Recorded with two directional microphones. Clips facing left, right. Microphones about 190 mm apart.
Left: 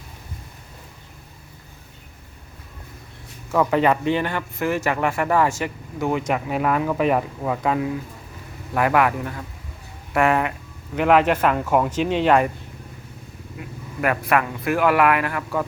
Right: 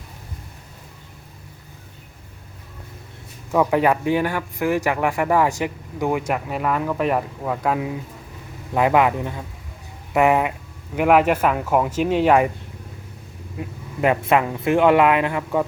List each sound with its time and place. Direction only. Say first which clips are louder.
3.5 s speech: right 1 dB; 10° right (ahead or behind)
8.7 s speech: right 2 dB; 20° right (ahead or behind)
13.6 s speech: right 4 dB; 25° right (ahead or behind)